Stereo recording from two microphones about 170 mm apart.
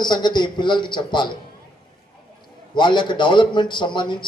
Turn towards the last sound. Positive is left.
turn(degrees=25)  # may be behind; listen again after turning